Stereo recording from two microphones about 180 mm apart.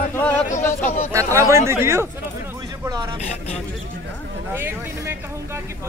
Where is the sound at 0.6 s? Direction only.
10° left (ahead or behind).